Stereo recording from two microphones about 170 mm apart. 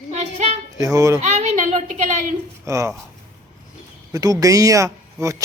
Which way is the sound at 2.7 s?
20° right (ahead or behind).